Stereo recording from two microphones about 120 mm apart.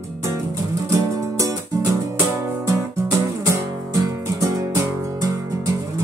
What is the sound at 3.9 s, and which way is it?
Music, 30° right (ahead or behind).